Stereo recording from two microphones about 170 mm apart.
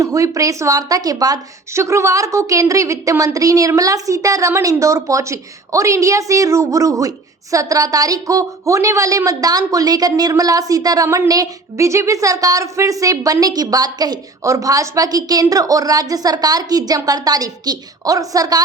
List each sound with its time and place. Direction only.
0.0 s a woman's voice: 20° right (ahead or behind)